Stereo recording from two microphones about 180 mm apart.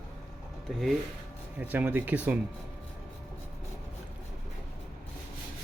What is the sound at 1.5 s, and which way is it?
Speech, 10° right (ahead or behind).